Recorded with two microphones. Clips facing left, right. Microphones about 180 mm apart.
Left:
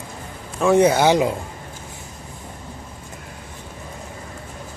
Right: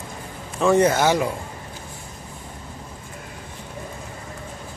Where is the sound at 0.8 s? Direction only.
15° left (ahead or behind).